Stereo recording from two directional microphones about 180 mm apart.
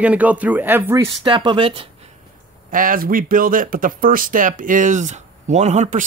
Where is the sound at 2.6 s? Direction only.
50° right (ahead or behind).